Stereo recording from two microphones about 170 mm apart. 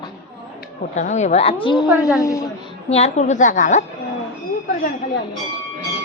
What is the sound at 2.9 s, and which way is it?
Speech, 40° left (ahead or behind).